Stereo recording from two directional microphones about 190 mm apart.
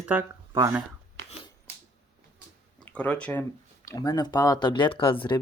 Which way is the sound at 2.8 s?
5° left (ahead or behind).